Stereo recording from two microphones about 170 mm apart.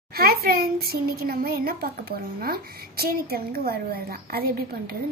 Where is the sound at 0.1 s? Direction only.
65° right (ahead or behind).